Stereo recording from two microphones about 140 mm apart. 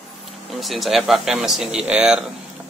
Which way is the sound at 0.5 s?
Centre (ahead or behind).